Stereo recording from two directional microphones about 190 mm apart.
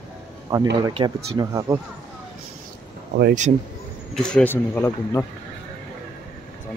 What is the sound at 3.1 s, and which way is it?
Speech, 55° right (ahead or behind).